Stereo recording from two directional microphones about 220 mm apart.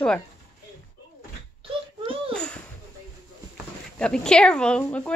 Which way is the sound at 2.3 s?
5° left (ahead or behind).